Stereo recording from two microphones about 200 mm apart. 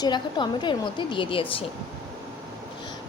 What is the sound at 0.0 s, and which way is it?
A woman's voice, 20° left (ahead or behind).